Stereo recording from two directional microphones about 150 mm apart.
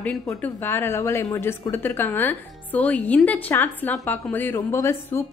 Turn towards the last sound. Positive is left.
turn(degrees=15)  # may be behind; listen again after turning